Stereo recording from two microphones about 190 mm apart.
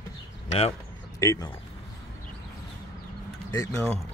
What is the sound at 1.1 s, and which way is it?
Speech, 15° left (ahead or behind).